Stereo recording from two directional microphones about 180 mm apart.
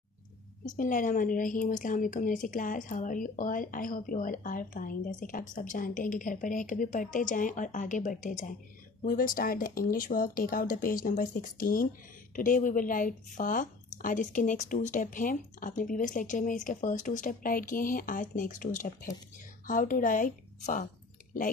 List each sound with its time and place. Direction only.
0.7 s a woman's voice: 50° left (ahead or behind)